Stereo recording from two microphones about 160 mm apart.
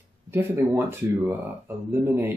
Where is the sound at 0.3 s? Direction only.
15° right (ahead or behind).